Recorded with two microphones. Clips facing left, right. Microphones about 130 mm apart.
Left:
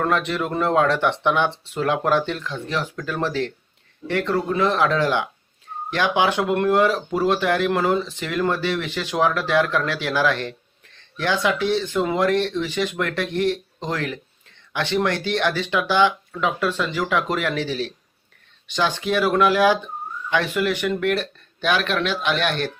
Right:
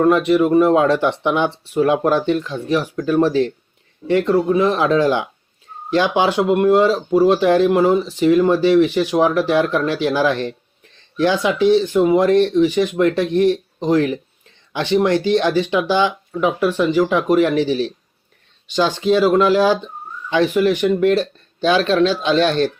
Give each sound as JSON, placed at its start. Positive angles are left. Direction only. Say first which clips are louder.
{"t": 0.0, "sound": "speech", "louder": "right 9 dB", "side_deg": -15}